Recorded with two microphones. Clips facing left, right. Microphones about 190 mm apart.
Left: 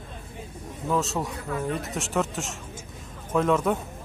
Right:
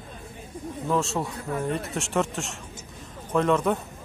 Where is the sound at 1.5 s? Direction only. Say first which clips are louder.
Right 1 dB; 30° right (ahead or behind).